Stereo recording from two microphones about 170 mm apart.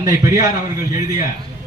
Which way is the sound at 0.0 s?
20° right (ahead or behind).